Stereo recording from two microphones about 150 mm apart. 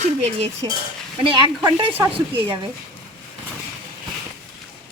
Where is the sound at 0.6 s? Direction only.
30° right (ahead or behind).